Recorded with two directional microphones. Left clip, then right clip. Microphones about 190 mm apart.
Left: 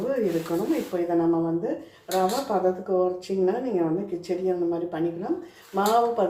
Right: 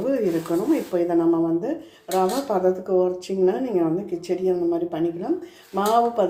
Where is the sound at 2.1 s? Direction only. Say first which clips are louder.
Right 2 dB; 40° right (ahead or behind).